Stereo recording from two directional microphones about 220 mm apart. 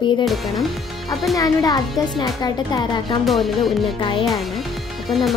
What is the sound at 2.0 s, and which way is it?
Speech, 15° left (ahead or behind).